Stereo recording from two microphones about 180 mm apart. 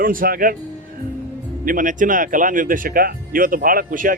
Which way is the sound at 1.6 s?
50° right (ahead or behind).